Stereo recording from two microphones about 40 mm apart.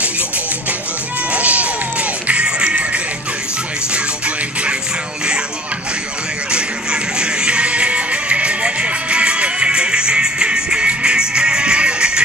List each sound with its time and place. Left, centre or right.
1.3 s music: right
6.5 s music: right